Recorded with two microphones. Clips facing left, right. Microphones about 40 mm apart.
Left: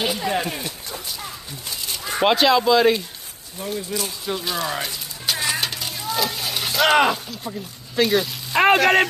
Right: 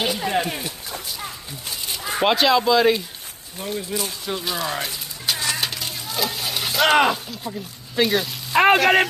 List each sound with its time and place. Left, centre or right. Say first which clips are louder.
0.3 s speech: right 1 dB; centre
1.9 s speech: left 1 dB; centre
3.6 s speech: even; centre
5.6 s a sound: even; centre